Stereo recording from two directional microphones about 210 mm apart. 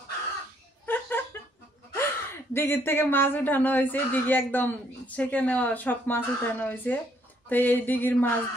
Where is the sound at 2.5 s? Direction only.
10° left (ahead or behind).